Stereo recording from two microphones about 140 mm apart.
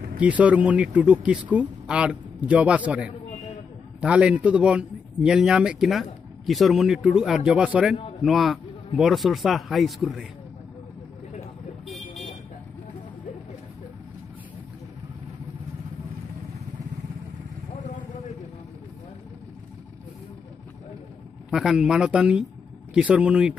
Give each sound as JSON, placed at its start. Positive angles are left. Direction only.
{"t": 0.2, "sound": "speech", "side_deg": -10}
{"t": 21.5, "sound": "speech", "side_deg": -5}